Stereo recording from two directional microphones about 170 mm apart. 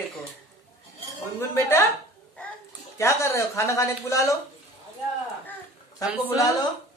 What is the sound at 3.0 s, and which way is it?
Speech, 15° left (ahead or behind).